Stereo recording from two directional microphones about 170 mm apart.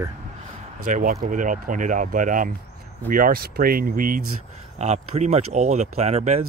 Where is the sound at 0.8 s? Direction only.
50° right (ahead or behind).